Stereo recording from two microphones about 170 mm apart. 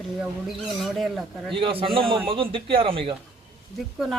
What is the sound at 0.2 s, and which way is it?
Speech, centre (ahead or behind).